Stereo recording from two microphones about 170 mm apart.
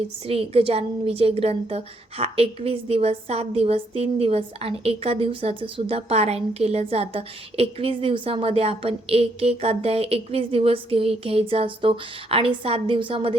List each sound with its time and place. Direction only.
0.3 s a woman's voice: 35° right (ahead or behind)